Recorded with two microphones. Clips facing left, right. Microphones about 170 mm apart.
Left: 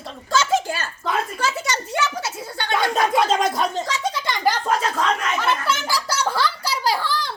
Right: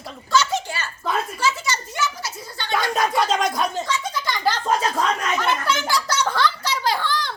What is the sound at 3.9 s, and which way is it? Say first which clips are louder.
Giggle: left 1 dB; 35° left (ahead or behind).